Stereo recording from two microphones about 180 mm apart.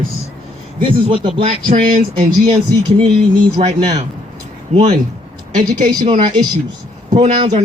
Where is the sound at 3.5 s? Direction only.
35° right (ahead or behind).